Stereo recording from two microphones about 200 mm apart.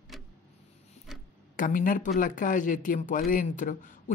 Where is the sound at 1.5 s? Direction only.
40° left (ahead or behind).